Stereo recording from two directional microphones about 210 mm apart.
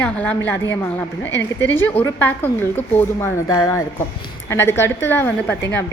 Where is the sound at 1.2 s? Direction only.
60° left (ahead or behind).